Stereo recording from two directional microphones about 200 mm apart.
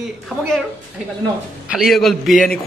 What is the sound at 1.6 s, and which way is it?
Speech, 5° right (ahead or behind).